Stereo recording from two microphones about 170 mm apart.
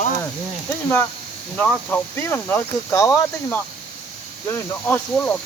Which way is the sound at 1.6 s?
10° left (ahead or behind).